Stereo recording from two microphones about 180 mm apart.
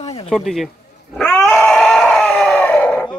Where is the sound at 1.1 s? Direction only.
5° left (ahead or behind).